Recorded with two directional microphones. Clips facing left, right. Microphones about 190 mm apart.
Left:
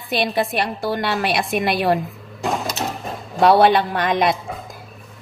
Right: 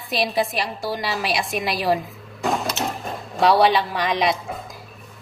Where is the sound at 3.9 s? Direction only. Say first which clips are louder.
Left 3 dB; 55° left (ahead or behind).